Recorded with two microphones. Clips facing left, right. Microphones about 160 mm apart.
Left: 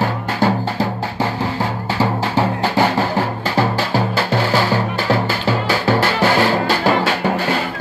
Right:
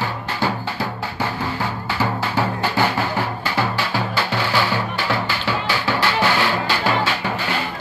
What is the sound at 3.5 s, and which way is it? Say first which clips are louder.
Music: left 5 dB; 40° left (ahead or behind).